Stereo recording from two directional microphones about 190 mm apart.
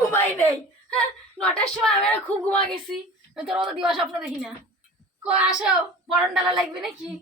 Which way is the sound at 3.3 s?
5° right (ahead or behind).